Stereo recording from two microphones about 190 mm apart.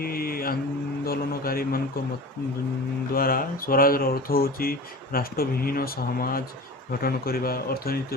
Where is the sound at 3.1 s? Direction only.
50° left (ahead or behind).